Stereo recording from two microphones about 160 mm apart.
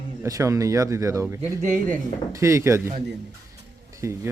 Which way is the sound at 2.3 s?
20° right (ahead or behind).